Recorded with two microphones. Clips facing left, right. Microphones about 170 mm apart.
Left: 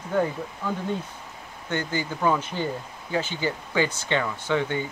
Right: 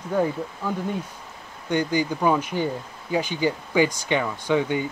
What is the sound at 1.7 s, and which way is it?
Speech, 15° right (ahead or behind).